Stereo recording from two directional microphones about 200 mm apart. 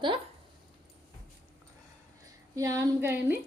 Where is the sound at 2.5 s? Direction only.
15° right (ahead or behind).